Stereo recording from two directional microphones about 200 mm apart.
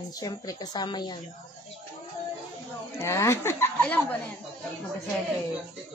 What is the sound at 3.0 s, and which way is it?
A woman's voice, 15° left (ahead or behind).